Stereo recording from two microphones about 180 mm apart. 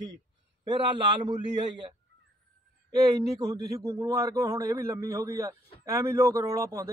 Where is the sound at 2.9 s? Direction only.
20° right (ahead or behind).